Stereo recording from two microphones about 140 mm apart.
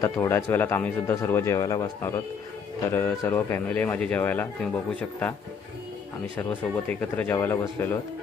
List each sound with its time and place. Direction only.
0.0 s a man's voice: 20° left (ahead or behind)
6.5 s a man's voice: 10° left (ahead or behind)